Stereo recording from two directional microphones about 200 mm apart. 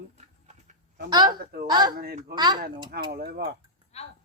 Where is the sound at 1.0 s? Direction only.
20° right (ahead or behind).